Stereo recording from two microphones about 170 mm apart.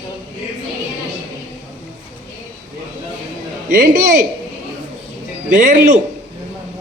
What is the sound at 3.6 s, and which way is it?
Speech, 50° right (ahead or behind).